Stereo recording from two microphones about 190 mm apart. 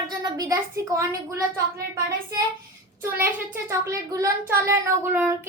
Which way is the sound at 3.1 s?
10° right (ahead or behind).